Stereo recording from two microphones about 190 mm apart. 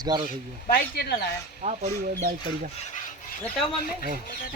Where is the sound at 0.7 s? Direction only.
55° left (ahead or behind).